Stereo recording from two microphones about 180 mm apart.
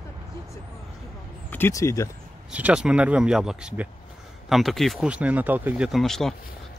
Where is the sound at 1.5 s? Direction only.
15° left (ahead or behind).